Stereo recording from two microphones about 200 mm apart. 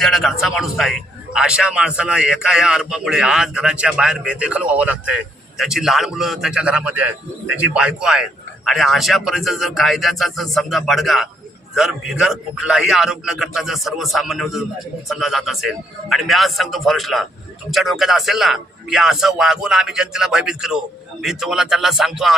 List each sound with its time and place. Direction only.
0.0 s a man's voice: centre (ahead or behind)